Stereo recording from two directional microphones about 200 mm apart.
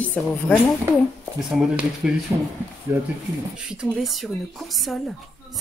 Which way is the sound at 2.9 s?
15° right (ahead or behind).